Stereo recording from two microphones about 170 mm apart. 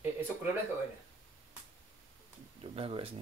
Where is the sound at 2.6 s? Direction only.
30° right (ahead or behind).